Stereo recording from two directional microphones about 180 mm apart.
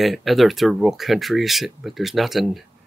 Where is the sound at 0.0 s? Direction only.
Centre (ahead or behind).